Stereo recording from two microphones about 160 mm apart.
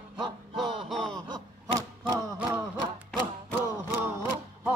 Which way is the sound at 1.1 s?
25° right (ahead or behind).